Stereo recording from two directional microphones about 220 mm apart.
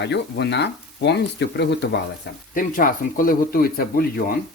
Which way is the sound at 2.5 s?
40° left (ahead or behind).